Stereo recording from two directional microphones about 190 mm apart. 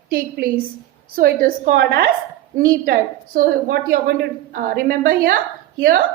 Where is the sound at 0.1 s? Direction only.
55° right (ahead or behind).